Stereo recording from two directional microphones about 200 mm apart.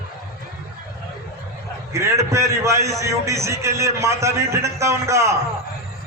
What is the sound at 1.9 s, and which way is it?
A man's voice, 15° right (ahead or behind).